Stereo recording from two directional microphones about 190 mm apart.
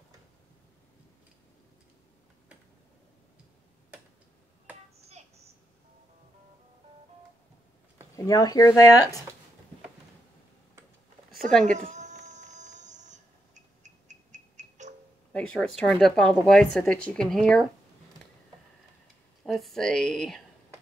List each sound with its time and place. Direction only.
8.3 s speech: 20° left (ahead or behind)
11.6 s a sound: 40° right (ahead or behind)
13.8 s music: 40° right (ahead or behind)
15.3 s a sound: 5° left (ahead or behind)
15.7 s speech: centre (ahead or behind)
19.4 s speech: centre (ahead or behind)